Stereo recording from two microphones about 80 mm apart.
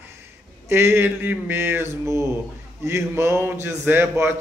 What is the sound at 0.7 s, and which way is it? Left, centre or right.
A man's voice, right.